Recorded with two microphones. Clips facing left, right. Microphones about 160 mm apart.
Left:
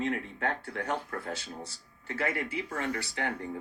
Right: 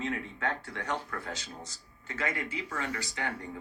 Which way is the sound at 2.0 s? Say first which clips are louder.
Left 3 dB; 60° left (ahead or behind).